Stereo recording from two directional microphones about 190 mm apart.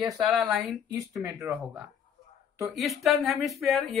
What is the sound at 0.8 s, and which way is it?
Speech, 15° right (ahead or behind).